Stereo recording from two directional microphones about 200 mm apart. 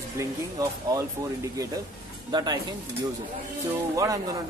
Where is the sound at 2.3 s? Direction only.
20° right (ahead or behind).